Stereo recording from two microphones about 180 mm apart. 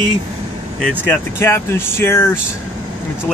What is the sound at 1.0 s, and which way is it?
Speech, 15° left (ahead or behind).